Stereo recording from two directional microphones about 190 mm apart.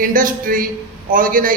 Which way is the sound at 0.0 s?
45° right (ahead or behind).